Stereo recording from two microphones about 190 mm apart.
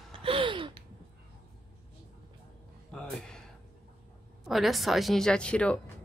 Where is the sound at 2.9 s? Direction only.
5° left (ahead or behind).